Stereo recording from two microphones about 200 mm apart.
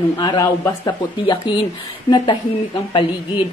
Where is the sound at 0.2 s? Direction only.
20° left (ahead or behind).